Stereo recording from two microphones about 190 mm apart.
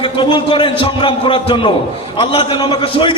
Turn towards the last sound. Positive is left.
turn(degrees=25)  # may be behind; listen again after turning